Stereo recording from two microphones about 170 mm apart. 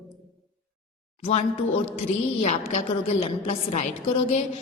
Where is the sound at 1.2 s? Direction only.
35° left (ahead or behind).